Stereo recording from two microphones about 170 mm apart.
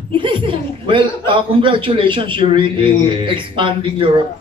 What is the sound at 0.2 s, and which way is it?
A man's voice, 30° right (ahead or behind).